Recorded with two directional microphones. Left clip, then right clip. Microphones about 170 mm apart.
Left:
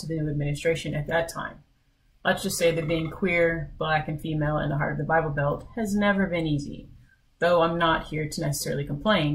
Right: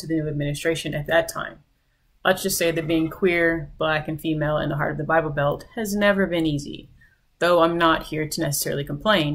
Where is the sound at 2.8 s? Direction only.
20° right (ahead or behind).